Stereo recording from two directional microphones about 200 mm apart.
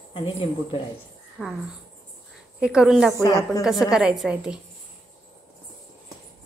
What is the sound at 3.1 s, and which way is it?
Speech, 15° left (ahead or behind).